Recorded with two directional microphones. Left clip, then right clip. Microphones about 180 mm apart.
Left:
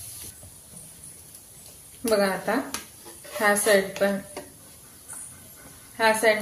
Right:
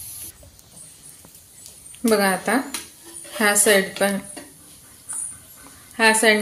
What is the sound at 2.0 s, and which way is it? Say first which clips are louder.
A woman's voice: right 4 dB; 50° right (ahead or behind).